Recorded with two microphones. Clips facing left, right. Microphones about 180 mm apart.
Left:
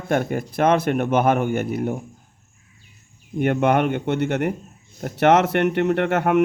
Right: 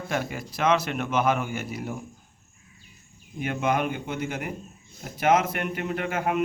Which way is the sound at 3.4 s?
65° left (ahead or behind).